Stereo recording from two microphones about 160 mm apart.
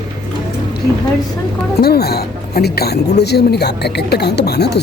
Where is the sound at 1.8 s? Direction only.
80° left.